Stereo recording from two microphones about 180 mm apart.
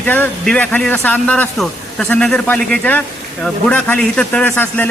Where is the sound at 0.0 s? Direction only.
10° left (ahead or behind).